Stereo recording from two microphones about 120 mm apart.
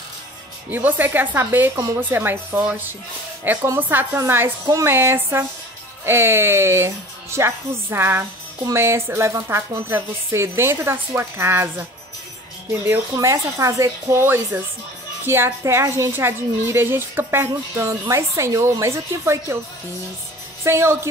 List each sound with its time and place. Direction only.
0.7 s a woman's voice: 15° right (ahead or behind)
13.1 s a woman's voice: 25° right (ahead or behind)
20.6 s a woman's voice: 20° right (ahead or behind)